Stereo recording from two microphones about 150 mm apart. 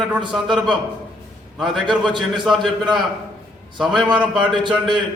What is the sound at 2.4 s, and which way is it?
Speech, centre (ahead or behind).